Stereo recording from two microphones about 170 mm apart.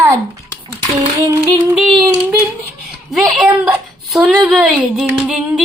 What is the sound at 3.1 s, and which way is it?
A woman's voice, centre (ahead or behind).